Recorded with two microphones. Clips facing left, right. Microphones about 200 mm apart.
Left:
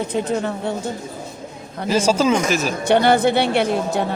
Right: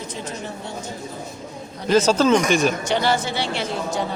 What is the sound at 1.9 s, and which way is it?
Speech, 10° left (ahead or behind).